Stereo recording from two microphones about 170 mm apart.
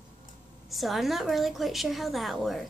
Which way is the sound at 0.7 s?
Centre (ahead or behind).